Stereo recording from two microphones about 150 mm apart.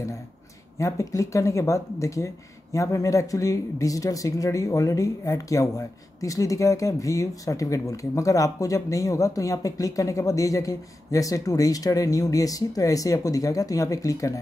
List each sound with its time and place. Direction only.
0.7 s speech: 20° left (ahead or behind)